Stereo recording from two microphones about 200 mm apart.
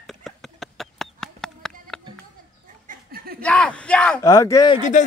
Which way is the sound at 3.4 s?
5° left (ahead or behind).